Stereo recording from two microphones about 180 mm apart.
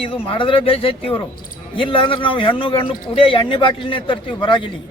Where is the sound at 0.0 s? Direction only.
30° left (ahead or behind).